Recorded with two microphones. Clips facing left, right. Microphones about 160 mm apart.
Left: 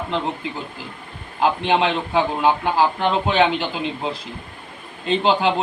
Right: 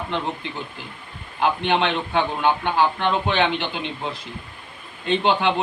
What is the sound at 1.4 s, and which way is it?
A man's voice, 30° left (ahead or behind).